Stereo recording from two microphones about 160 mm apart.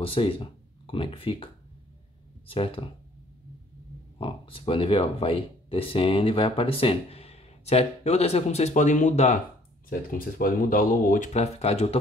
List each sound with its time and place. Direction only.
0.0 s speech: 35° left (ahead or behind)
4.2 s speech: 35° left (ahead or behind)
9.8 s speech: 60° left (ahead or behind); by 12.0 s 40° left (ahead or behind)